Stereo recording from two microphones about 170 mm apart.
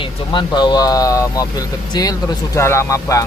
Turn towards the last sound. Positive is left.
turn(degrees=15)  # may be behind; listen again after turning